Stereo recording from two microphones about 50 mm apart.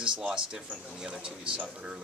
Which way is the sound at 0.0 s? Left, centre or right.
Centre.